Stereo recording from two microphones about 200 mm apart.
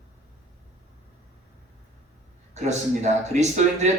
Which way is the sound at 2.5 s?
35° right (ahead or behind).